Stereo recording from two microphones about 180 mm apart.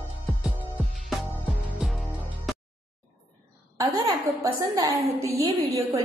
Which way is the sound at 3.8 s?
25° right (ahead or behind).